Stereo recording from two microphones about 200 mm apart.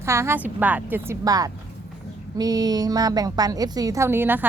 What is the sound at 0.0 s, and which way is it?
A woman's voice, 15° right (ahead or behind).